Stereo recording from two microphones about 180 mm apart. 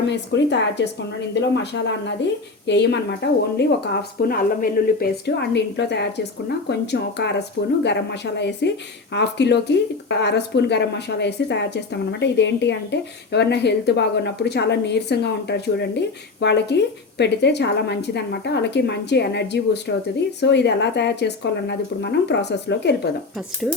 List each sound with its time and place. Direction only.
0.0 s a woman's voice: 75° left (ahead or behind)
3.6 s a woman's voice: 60° left (ahead or behind)